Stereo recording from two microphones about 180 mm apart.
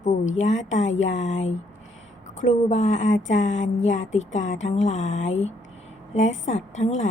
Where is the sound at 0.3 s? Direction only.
40° left (ahead or behind).